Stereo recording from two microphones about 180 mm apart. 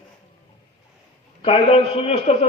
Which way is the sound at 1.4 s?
30° left (ahead or behind).